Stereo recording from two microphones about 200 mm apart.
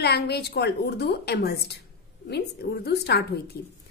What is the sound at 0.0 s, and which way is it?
A woman's voice, 55° left (ahead or behind).